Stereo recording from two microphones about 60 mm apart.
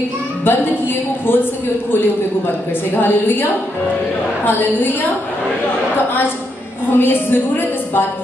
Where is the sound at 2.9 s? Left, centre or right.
Left.